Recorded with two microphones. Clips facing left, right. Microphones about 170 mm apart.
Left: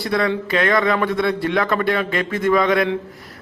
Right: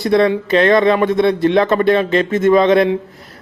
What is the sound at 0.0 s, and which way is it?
A man's voice, 20° right (ahead or behind).